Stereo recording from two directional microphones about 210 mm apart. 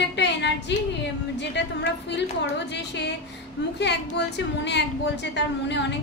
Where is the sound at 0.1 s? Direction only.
55° left (ahead or behind).